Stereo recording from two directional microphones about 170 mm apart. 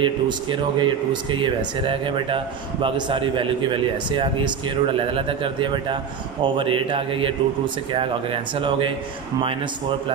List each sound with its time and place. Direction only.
0.0 s a man's voice: 30° right (ahead or behind)